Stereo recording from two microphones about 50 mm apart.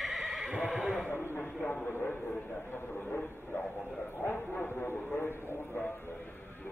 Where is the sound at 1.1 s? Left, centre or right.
Left.